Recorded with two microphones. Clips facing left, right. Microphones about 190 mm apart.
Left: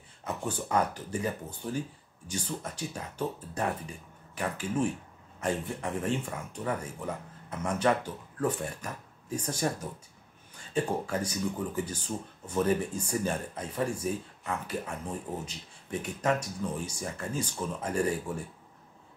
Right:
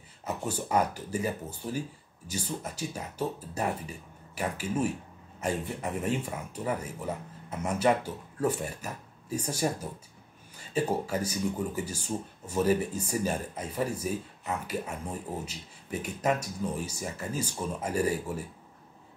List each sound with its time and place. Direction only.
0.2 s speech: 10° right (ahead or behind)